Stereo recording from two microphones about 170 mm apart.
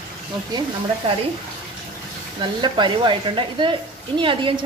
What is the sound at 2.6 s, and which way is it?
Speech, 25° right (ahead or behind).